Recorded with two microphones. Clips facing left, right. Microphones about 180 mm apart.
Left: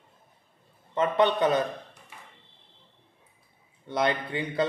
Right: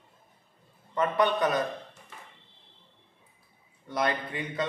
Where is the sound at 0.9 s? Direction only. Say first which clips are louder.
Left 2 dB; 25° left (ahead or behind).